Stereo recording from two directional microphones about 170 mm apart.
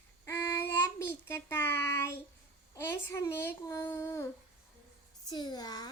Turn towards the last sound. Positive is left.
turn(degrees=25)  # may be behind; listen again after turning